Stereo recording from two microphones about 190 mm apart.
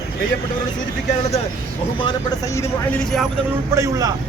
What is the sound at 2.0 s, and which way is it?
Speech, 20° left (ahead or behind).